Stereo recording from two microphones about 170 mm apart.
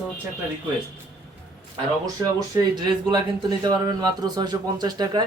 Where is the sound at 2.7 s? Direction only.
25° right (ahead or behind).